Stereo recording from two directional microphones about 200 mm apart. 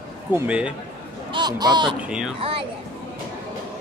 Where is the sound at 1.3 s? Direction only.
20° right (ahead or behind).